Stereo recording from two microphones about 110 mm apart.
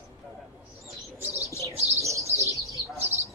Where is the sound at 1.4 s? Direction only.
30° left (ahead or behind).